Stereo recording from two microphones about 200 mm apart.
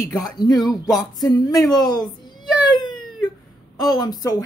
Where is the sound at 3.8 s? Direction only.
20° left (ahead or behind).